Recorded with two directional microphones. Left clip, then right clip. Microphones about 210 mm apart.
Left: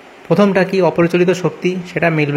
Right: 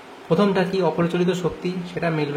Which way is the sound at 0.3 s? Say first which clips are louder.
Left 7 dB; 25° left (ahead or behind).